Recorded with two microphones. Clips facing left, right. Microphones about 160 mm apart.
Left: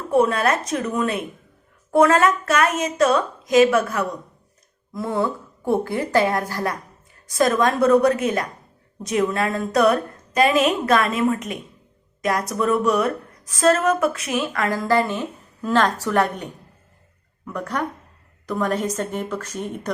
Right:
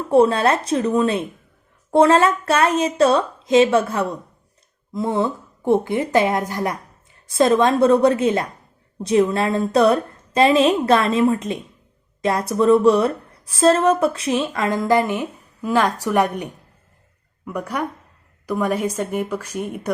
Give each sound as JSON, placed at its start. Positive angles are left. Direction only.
{"t": 0.1, "sound": "a woman's voice", "side_deg": -30}